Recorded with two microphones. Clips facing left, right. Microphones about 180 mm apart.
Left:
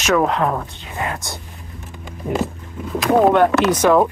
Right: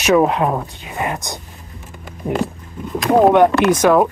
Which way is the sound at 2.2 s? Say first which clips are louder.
Right 1 dB; 30° right (ahead or behind).